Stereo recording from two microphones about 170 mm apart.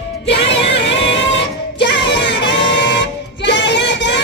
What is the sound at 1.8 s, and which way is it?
Music, 90° left.